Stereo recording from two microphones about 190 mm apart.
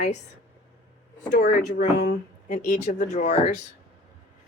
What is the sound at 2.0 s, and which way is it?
Speech, 50° left (ahead or behind).